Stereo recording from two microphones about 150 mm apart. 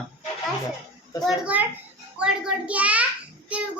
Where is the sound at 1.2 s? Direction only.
10° right (ahead or behind).